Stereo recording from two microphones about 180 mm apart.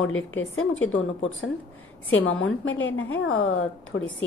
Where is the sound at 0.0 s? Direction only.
90° left.